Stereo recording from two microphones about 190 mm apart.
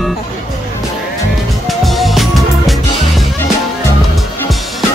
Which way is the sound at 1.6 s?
Centre (ahead or behind).